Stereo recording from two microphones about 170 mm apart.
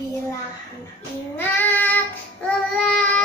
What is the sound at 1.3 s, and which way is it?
Child singing, 10° left (ahead or behind).